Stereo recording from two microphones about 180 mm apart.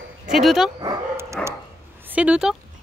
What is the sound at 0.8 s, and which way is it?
Dog, 20° right (ahead or behind).